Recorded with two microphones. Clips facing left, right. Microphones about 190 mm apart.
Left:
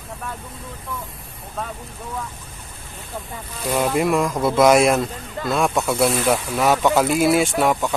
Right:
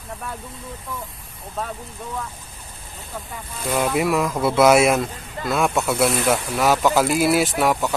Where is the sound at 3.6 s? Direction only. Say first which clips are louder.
Left 1 dB; centre (ahead or behind).